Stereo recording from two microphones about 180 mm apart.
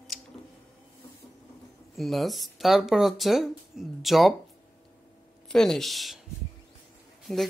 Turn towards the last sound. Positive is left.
turn(degrees=0)  # may be behind; listen again after turning